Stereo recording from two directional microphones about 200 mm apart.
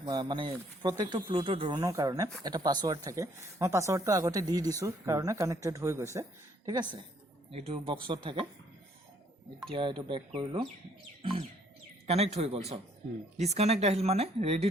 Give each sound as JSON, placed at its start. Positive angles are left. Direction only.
{"t": 0.0, "sound": "speech", "side_deg": -25}
{"t": 9.7, "sound": "speech", "side_deg": -25}
{"t": 11.2, "sound": "bird", "side_deg": -25}
{"t": 12.0, "sound": "speech", "side_deg": -30}